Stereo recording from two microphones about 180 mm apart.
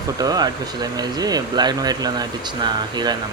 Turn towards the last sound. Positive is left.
turn(degrees=-25)  # may be behind; listen again after turning